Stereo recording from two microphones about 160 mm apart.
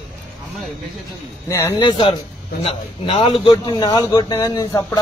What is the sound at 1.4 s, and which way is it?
Speech, 15° left (ahead or behind).